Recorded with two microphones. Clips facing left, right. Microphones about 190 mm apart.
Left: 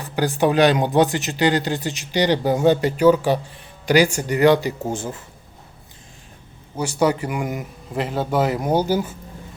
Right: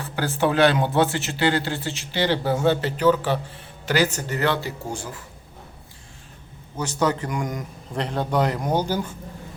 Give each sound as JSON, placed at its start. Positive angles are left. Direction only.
{"t": 0.0, "sound": "speech", "side_deg": 15}
{"t": 6.7, "sound": "speech", "side_deg": 10}